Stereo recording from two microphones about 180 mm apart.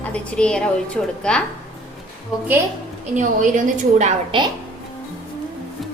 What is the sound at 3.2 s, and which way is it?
Speech, 45° right (ahead or behind).